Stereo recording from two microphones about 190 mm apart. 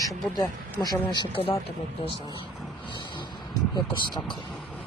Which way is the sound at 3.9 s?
25° left (ahead or behind).